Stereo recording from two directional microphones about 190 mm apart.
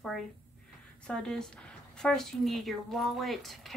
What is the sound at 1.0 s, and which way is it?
A woman's voice, 5° left (ahead or behind).